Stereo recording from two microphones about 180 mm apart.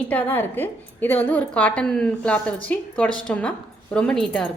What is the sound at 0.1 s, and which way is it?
A woman's voice, 10° left (ahead or behind).